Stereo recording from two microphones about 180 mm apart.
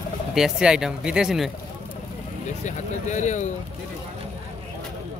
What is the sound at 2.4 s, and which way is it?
Speech, 40° left (ahead or behind).